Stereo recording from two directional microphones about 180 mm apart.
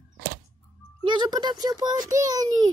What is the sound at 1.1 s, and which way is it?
A child's voice, 25° right (ahead or behind).